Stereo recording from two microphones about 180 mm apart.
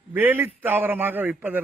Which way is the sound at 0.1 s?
10° right (ahead or behind).